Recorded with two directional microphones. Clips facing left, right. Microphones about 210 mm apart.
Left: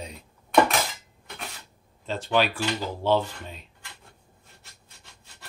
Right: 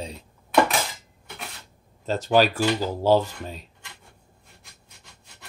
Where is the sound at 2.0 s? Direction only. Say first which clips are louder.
Right 5 dB; 40° right (ahead or behind).